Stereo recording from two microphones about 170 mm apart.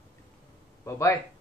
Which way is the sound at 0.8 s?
20° left (ahead or behind).